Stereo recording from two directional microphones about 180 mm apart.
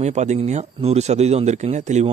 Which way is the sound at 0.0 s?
40° right (ahead or behind).